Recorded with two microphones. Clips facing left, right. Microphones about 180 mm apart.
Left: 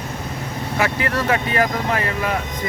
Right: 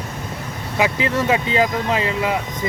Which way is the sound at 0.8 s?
20° right (ahead or behind).